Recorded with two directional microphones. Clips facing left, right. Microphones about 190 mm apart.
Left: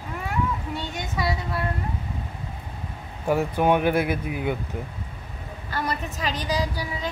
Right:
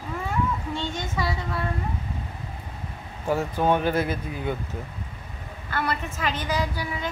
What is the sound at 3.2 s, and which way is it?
Speech, 15° left (ahead or behind).